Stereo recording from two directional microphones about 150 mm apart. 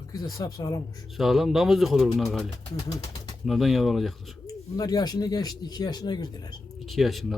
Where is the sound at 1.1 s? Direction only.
Centre (ahead or behind).